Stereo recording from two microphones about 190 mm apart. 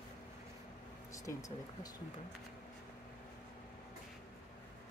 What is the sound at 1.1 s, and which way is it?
Speech, 15° left (ahead or behind).